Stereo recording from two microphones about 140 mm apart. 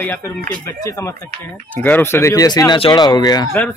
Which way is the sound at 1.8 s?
15° left (ahead or behind).